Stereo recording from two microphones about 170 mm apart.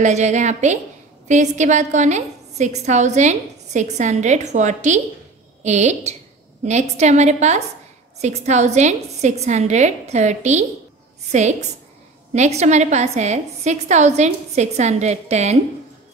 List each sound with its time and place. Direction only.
0.0 s a woman's voice: 45° right (ahead or behind)
12.4 s a woman's voice: 40° right (ahead or behind)